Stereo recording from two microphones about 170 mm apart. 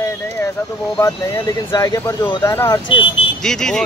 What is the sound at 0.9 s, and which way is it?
Speech, 20° left (ahead or behind).